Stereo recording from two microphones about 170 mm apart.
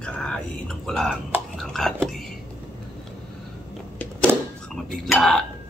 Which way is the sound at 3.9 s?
5° left (ahead or behind).